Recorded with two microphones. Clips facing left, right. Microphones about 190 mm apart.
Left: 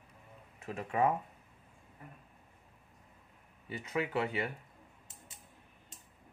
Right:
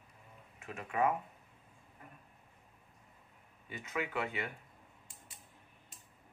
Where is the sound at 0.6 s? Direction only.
35° left (ahead or behind).